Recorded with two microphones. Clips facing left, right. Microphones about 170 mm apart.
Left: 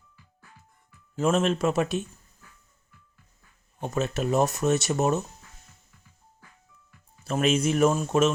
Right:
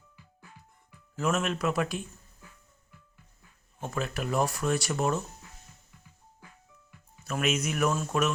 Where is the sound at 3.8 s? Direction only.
20° left (ahead or behind).